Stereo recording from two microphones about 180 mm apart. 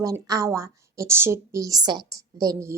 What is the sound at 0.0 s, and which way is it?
Speech, 20° right (ahead or behind).